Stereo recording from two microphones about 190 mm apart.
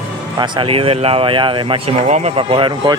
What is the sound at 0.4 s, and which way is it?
Speech, 25° right (ahead or behind).